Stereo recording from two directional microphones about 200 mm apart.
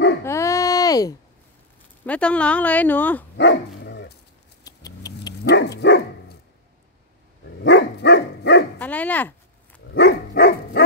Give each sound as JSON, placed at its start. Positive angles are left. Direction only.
{"t": 0.2, "sound": "babbling", "side_deg": 15}
{"t": 2.0, "sound": "speech", "side_deg": 5}
{"t": 3.3, "sound": "dog", "side_deg": 60}
{"t": 4.6, "sound": "a sound", "side_deg": 20}
{"t": 5.4, "sound": "dog", "side_deg": 55}
{"t": 7.6, "sound": "dog", "side_deg": 60}
{"t": 8.7, "sound": "speech", "side_deg": 5}
{"t": 9.9, "sound": "dog", "side_deg": 55}